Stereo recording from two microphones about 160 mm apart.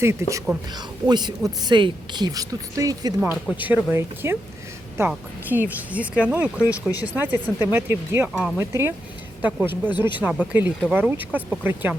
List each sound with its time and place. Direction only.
0.0 s speech: 15° right (ahead or behind)
3.6 s speech: 10° right (ahead or behind)